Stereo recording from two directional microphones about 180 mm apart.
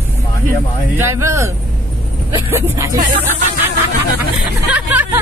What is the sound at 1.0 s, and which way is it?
Speech, 15° right (ahead or behind).